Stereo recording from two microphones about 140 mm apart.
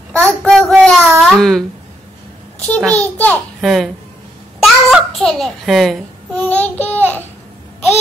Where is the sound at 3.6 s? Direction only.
Centre (ahead or behind).